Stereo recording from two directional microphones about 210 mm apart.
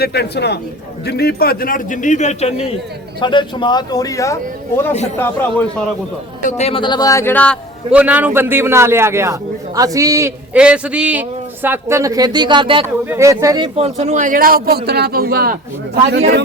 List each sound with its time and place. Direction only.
0.0 s a man's voice: 50° left (ahead or behind); by 2.6 s 30° left (ahead or behind)
3.2 s speech: 20° left (ahead or behind)
6.4 s speech: 30° left (ahead or behind); by 7.6 s 5° left (ahead or behind)
7.9 s a man's voice: 5° right (ahead or behind)
13.7 s a man's voice: 30° right (ahead or behind); by 16.4 s 55° right (ahead or behind)